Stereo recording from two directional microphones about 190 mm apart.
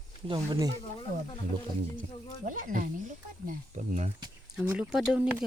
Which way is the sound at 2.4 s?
45° right (ahead or behind).